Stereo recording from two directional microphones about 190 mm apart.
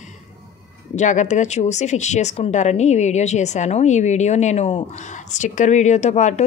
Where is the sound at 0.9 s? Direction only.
40° left (ahead or behind).